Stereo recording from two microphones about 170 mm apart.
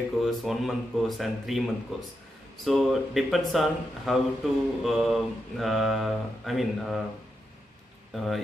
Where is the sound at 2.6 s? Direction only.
Centre (ahead or behind).